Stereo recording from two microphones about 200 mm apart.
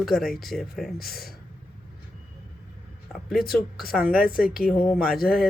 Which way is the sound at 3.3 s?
50° left (ahead or behind).